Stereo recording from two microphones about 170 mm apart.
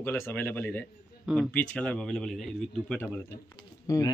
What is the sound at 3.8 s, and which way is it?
Speech, 20° left (ahead or behind).